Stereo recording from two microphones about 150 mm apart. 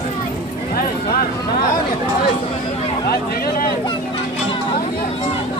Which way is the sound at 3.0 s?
90° left.